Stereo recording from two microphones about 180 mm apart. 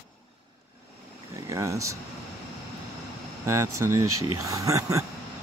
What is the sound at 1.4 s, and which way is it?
Speech, 20° right (ahead or behind).